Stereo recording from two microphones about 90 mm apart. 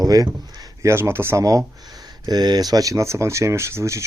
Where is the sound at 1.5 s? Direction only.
45° right (ahead or behind).